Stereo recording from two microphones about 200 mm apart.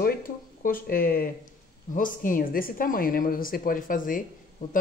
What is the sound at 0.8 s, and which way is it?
A woman's voice, 45° left (ahead or behind).